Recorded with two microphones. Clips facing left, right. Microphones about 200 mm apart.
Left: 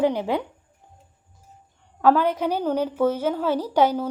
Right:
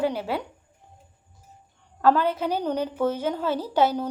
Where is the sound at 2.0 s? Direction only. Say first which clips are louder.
Left 2 dB; 10° left (ahead or behind).